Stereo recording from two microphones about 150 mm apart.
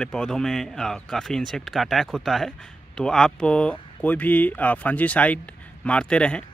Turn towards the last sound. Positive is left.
turn(degrees=5)  # may be behind; listen again after turning